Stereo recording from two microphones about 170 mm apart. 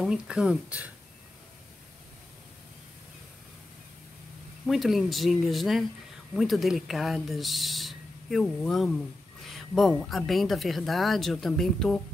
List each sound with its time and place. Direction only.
0.0 s speech: 5° right (ahead or behind)
4.6 s speech: centre (ahead or behind)